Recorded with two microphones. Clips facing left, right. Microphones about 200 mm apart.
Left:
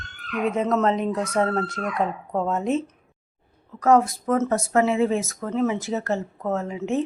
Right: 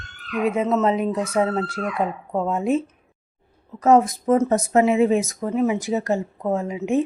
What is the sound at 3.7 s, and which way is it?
Speech, 20° right (ahead or behind).